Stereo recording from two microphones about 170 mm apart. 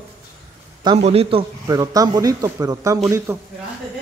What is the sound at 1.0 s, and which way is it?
Speech, 35° right (ahead or behind).